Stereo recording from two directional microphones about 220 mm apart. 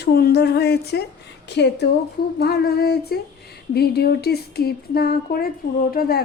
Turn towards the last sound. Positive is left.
turn(degrees=40)  # may be behind; listen again after turning